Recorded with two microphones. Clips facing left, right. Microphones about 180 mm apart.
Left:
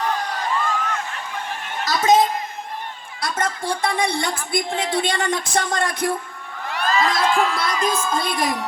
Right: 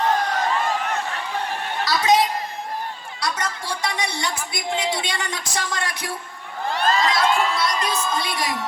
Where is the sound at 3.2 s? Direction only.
50° left (ahead or behind).